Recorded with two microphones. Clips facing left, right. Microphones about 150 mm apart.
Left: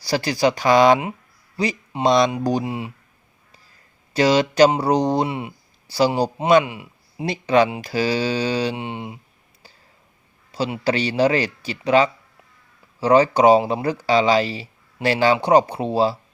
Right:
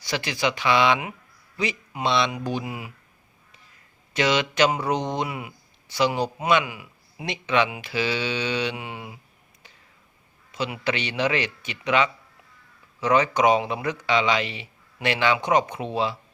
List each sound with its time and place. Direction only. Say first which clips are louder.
0.0 s speech: left 7 dB; 35° left (ahead or behind)
4.1 s speech: left 6 dB; 35° left (ahead or behind)
10.5 s speech: left 5 dB; 35° left (ahead or behind)